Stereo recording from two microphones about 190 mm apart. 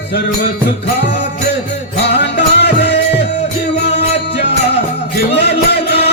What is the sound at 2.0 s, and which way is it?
Music, 65° left (ahead or behind).